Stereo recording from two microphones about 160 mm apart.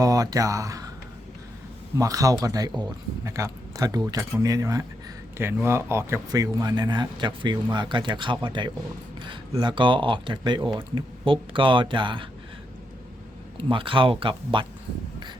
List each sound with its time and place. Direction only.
0.0 s speech: 20° right (ahead or behind)
2.0 s speech: 20° right (ahead or behind)
13.6 s speech: 30° right (ahead or behind)